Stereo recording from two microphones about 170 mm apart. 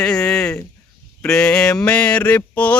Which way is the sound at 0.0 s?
5° left (ahead or behind).